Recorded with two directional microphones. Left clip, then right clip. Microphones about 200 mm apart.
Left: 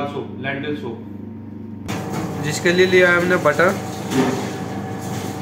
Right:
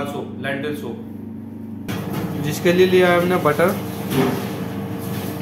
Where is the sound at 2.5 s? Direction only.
Centre (ahead or behind).